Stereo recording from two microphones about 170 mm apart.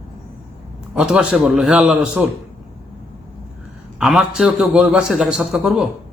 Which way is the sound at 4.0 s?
5° right (ahead or behind).